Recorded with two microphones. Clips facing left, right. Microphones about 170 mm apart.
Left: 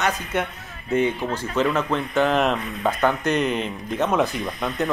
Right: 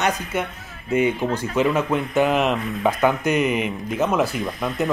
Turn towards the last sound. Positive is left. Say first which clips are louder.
# right 1 dB
turn(degrees=0)  # may be behind; listen again after turning